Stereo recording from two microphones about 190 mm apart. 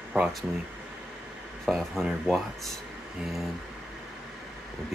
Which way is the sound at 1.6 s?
Centre (ahead or behind).